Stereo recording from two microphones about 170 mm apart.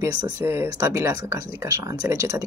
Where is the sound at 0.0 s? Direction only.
20° right (ahead or behind).